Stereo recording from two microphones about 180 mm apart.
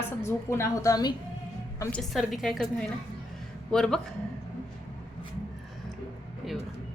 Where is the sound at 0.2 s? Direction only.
15° left (ahead or behind).